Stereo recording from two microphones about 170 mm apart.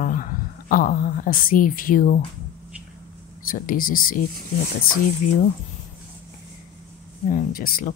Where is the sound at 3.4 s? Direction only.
55° left (ahead or behind).